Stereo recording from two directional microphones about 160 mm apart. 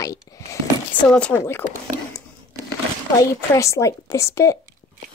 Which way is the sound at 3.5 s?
20° left (ahead or behind).